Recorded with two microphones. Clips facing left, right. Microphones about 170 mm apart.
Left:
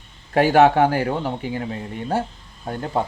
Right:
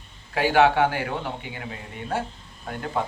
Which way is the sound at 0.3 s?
45° left (ahead or behind).